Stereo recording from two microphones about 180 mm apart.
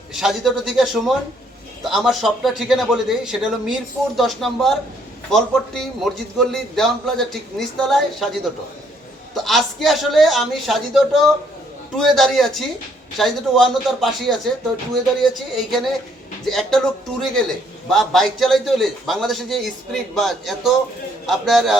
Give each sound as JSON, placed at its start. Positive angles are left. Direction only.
{"t": 0.1, "sound": "a man's voice", "side_deg": 0}
{"t": 9.3, "sound": "a man's voice", "side_deg": 0}
{"t": 15.5, "sound": "a man's voice", "side_deg": 0}